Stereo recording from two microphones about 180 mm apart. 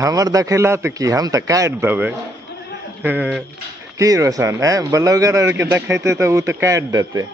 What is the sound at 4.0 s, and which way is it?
A man's voice, 20° right (ahead or behind).